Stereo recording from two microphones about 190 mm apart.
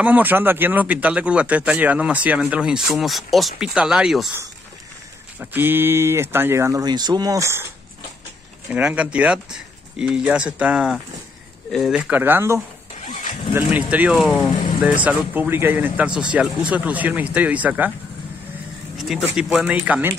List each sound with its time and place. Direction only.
0.0 s speech: 10° right (ahead or behind)
5.4 s speech: 10° right (ahead or behind)
8.6 s speech: 5° right (ahead or behind)
13.0 s vehicle: 40° left (ahead or behind)
13.6 s speech: 10° right (ahead or behind)
18.9 s speech: centre (ahead or behind)